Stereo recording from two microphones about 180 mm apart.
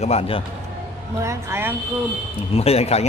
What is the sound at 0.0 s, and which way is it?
Speech, 35° left (ahead or behind).